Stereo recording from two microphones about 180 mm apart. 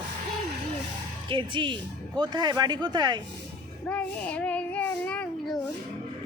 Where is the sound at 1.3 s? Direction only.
25° right (ahead or behind).